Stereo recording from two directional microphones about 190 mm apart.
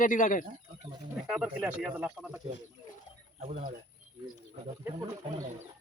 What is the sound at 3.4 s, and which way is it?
Speech, 40° right (ahead or behind).